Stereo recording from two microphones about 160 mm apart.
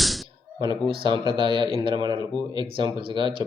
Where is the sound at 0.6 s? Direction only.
30° right (ahead or behind).